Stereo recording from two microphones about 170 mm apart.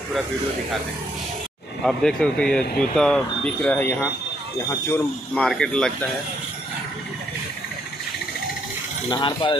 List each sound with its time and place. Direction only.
1.9 s speech: 5° left (ahead or behind)
5.3 s speech: centre (ahead or behind)
9.1 s speech: 25° left (ahead or behind)